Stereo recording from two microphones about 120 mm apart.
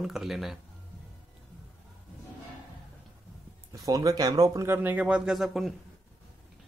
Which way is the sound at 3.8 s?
30° right (ahead or behind).